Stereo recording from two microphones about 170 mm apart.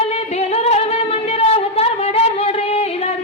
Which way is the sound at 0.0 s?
35° left (ahead or behind).